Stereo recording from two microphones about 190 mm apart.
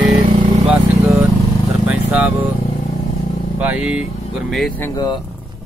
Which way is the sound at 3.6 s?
5° right (ahead or behind).